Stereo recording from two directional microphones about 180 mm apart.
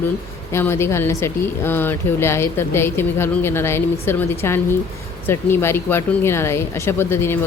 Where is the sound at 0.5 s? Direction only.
15° left (ahead or behind).